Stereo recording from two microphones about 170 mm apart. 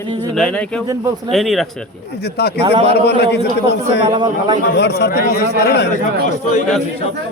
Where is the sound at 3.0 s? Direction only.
75° left (ahead or behind).